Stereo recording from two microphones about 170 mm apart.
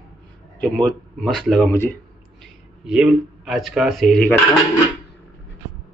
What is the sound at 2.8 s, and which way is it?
Speech, 5° right (ahead or behind).